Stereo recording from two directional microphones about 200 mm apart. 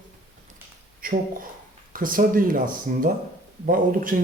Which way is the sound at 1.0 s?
45° right (ahead or behind).